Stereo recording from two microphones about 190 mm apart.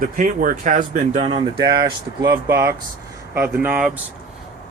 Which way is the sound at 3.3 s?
10° right (ahead or behind).